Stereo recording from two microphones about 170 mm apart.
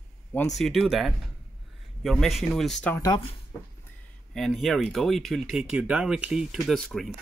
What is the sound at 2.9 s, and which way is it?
Speech, 20° left (ahead or behind).